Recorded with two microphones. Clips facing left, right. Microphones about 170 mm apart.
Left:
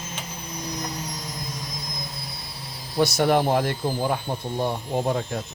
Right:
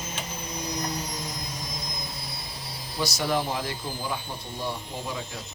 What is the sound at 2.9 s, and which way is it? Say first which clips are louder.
Speech: left 7 dB; 55° left (ahead or behind).